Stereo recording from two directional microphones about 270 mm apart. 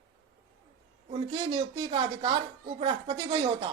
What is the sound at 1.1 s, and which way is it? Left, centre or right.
Speech, centre.